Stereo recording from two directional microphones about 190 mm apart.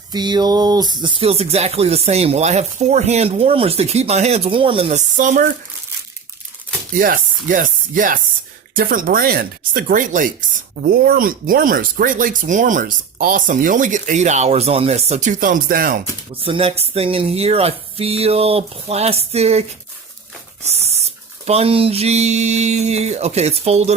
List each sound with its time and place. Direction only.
0.1 s speech: 20° right (ahead or behind); by 5.5 s 40° right (ahead or behind)
7.0 s speech: 45° right (ahead or behind)
16.3 s speech: 30° right (ahead or behind)
20.7 s speech: 35° right (ahead or behind)